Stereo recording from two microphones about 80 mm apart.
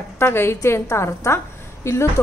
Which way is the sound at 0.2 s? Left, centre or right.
Left.